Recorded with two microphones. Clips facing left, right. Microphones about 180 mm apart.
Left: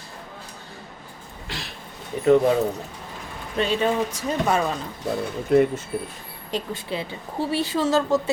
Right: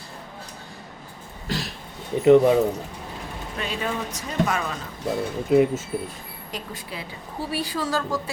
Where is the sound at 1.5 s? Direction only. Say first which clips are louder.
Right 7 dB; 40° right (ahead or behind).